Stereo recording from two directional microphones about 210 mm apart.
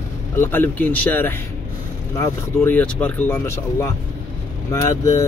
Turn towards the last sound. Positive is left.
turn(degrees=15)  # may be behind; listen again after turning